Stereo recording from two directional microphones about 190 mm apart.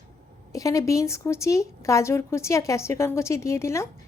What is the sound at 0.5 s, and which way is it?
A woman's voice, 15° left (ahead or behind).